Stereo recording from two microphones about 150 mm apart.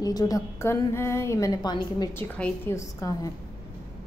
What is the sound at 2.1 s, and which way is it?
A woman's voice, 10° left (ahead or behind).